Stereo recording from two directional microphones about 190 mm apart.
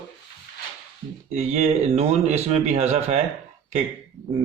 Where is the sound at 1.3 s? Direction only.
35° right (ahead or behind).